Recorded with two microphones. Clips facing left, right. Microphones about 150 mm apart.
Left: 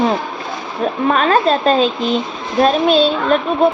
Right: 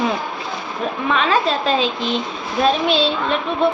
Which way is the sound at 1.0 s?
50° left (ahead or behind).